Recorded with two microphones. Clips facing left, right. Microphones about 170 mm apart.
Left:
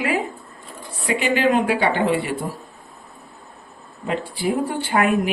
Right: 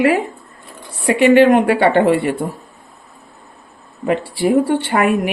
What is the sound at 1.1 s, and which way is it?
Speech, 60° right (ahead or behind).